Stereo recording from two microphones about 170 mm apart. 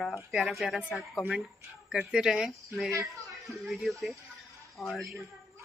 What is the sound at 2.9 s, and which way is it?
Speech, 20° right (ahead or behind).